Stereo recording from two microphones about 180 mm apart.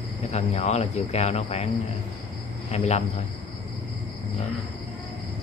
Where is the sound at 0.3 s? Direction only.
40° left (ahead or behind).